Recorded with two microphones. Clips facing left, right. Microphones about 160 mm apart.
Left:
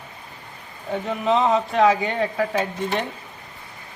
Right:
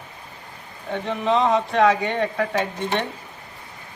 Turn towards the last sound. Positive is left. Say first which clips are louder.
# even
turn(degrees=5)  # may be behind; listen again after turning